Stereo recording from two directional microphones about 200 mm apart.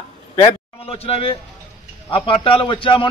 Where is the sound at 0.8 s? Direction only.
30° left (ahead or behind).